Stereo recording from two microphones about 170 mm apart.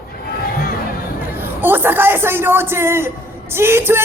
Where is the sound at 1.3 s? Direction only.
10° right (ahead or behind).